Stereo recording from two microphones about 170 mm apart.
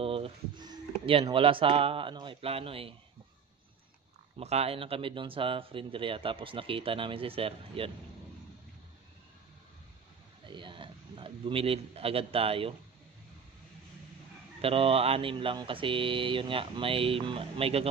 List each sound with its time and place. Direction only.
0.0 s speech: 35° right (ahead or behind)
4.4 s speech: 40° right (ahead or behind)
10.5 s a man's voice: 30° right (ahead or behind)
14.6 s speech: 35° right (ahead or behind)